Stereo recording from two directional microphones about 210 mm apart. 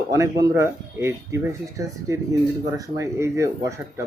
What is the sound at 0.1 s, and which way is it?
Speech, 15° right (ahead or behind).